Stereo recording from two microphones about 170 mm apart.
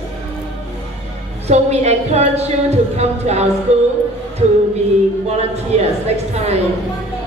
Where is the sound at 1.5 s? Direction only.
40° right (ahead or behind).